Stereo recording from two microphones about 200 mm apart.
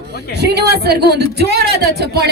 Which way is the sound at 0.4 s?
55° right (ahead or behind).